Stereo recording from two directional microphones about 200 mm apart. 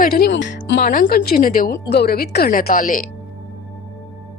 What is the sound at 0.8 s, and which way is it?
A woman's voice, 45° left (ahead or behind).